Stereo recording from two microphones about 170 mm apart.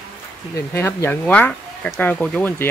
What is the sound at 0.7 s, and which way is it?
Speech, 15° left (ahead or behind).